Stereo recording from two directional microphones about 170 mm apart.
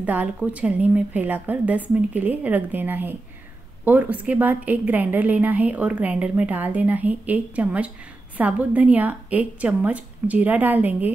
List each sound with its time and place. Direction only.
0.0 s a woman's voice: 10° right (ahead or behind)